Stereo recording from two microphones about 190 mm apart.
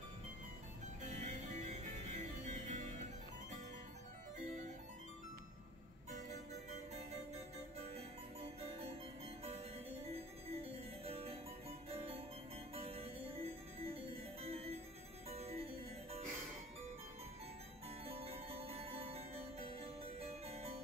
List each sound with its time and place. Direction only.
1.0 s music: 40° right (ahead or behind)
7.9 s music: 30° right (ahead or behind)
10.0 s music: 30° right (ahead or behind)
18.0 s music: 30° right (ahead or behind)